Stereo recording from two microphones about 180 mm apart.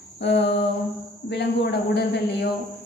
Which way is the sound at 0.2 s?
75° left (ahead or behind).